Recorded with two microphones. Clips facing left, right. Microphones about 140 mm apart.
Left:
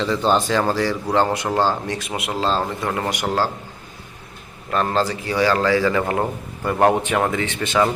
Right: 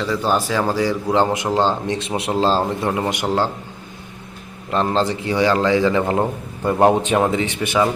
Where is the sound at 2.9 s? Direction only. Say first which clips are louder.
Right 2 dB; 20° right (ahead or behind).